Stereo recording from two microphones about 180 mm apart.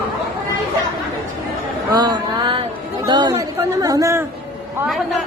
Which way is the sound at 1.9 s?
25° right (ahead or behind).